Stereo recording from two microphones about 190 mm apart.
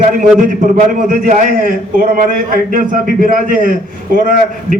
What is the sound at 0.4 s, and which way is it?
A man's voice, 45° right (ahead or behind).